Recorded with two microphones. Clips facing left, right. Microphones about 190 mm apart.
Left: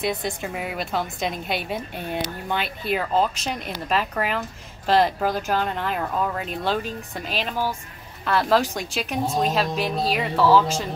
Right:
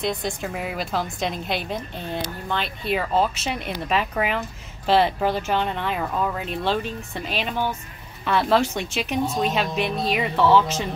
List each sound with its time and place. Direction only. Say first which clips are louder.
0.0 s speech: even; centre (ahead or behind)
9.8 s a woman's voice: even; 35° left (ahead or behind)
10.1 s speech: even; centre (ahead or behind)